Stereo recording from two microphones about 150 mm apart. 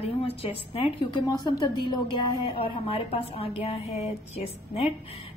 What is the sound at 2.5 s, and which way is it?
Speech, 35° left (ahead or behind).